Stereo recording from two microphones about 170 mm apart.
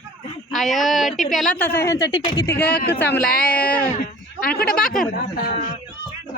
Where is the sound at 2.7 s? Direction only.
65° left (ahead or behind).